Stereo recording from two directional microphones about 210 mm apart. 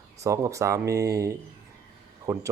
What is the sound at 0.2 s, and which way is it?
Speech, 15° right (ahead or behind).